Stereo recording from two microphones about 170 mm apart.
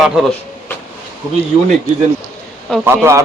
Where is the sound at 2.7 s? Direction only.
5° left (ahead or behind).